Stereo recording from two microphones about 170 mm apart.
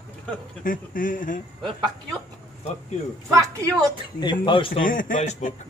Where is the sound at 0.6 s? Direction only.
55° left (ahead or behind).